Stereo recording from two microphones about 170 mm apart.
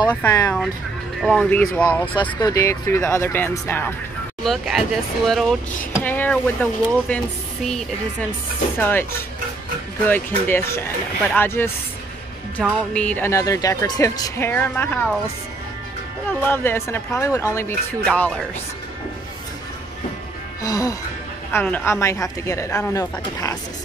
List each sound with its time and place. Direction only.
0.1 s speech: 15° left (ahead or behind)
1.2 s speech: 5° left (ahead or behind)
2.3 s speech: 20° left (ahead or behind)
4.4 s speech: centre (ahead or behind)
10.0 s speech: 10° left (ahead or behind)
12.6 s speech: centre (ahead or behind)
16.3 s speech: 10° left (ahead or behind)
20.6 s speech: 20° left (ahead or behind)